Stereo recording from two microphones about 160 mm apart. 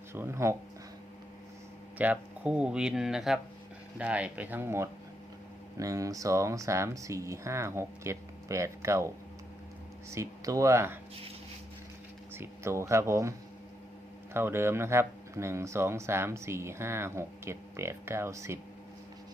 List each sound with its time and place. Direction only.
0.1 s speech: 15° right (ahead or behind)
2.0 s speech: 10° right (ahead or behind)
12.3 s speech: 15° right (ahead or behind)
14.3 s speech: 15° right (ahead or behind)